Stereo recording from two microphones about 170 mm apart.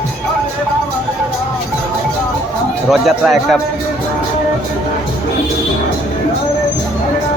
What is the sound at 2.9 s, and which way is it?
Speech, centre (ahead or behind).